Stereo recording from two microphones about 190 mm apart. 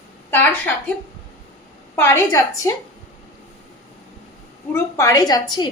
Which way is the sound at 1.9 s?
15° left (ahead or behind).